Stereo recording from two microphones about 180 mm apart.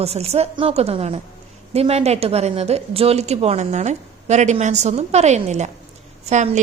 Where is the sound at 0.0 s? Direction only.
35° right (ahead or behind).